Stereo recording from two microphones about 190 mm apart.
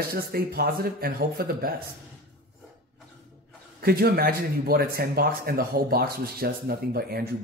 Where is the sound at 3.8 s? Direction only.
55° right (ahead or behind).